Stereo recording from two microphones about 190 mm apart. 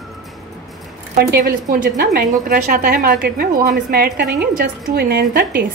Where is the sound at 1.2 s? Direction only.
55° right (ahead or behind).